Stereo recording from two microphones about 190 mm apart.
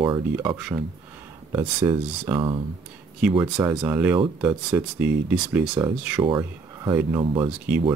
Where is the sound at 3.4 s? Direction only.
10° right (ahead or behind).